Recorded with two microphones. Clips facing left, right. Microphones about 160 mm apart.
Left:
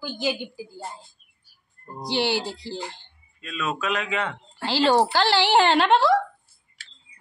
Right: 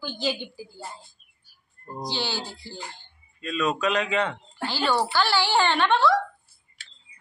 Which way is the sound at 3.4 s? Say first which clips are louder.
Right 3 dB; centre (ahead or behind).